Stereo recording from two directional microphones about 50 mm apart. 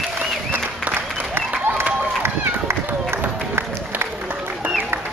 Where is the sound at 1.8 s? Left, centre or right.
Right.